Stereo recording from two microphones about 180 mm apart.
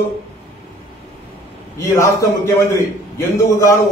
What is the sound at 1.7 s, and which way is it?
A man's voice, 15° left (ahead or behind).